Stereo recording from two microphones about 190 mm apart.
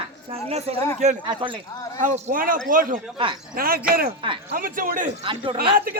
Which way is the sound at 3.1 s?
25° right (ahead or behind).